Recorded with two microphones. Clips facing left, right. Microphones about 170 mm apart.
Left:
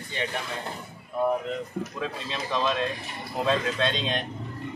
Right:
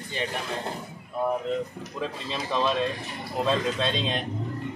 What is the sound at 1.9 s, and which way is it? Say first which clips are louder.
Speech: right 1 dB; centre (ahead or behind).